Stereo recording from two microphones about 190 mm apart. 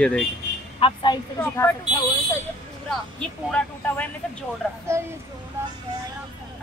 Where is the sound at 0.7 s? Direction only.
25° left (ahead or behind).